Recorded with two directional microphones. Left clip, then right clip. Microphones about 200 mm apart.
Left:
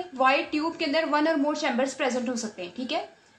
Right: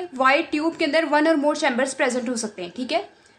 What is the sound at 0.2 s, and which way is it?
A woman's voice, 45° right (ahead or behind).